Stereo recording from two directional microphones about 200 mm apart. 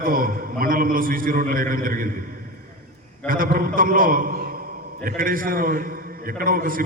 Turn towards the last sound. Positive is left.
turn(degrees=-45)  # may be behind; listen again after turning